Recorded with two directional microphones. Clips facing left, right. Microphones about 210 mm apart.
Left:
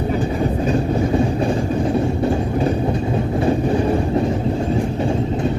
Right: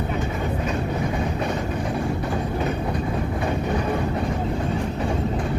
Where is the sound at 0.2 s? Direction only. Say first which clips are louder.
Left 6 dB; 30° left (ahead or behind).